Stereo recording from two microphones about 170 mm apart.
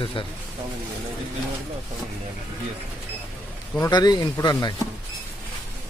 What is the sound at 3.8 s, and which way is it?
Speech, 25° left (ahead or behind).